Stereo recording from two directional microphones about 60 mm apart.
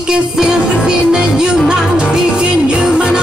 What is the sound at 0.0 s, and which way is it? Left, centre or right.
Music, centre.